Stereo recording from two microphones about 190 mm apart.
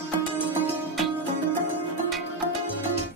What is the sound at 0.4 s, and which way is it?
Music, 10° right (ahead or behind).